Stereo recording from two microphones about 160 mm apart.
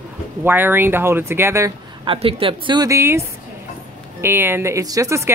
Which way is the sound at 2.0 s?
35° right (ahead or behind).